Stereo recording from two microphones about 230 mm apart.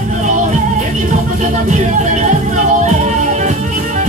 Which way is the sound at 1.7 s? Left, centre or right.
Right.